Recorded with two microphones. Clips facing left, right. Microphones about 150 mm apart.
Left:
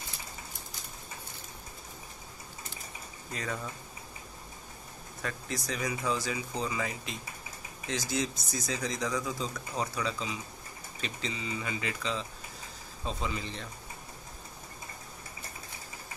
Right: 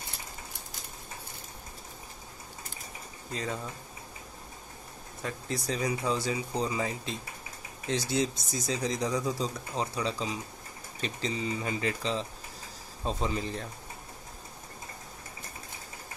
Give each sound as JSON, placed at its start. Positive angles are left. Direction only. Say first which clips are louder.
{"t": 3.3, "sound": "speech", "louder": "right 2 dB", "side_deg": -25}
{"t": 5.2, "sound": "speech", "louder": "right 3 dB", "side_deg": -30}